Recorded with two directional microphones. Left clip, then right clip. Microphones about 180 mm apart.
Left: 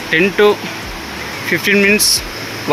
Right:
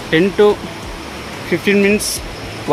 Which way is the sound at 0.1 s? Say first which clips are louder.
Left 1 dB; 20° right (ahead or behind).